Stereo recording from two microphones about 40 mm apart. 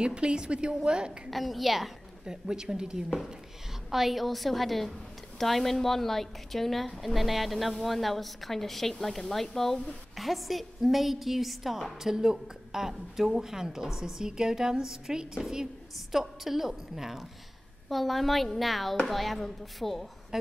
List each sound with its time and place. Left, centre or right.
0.0 s a woman's voice: right
1.3 s a woman's voice: centre
2.2 s a woman's voice: centre
3.9 s a woman's voice: centre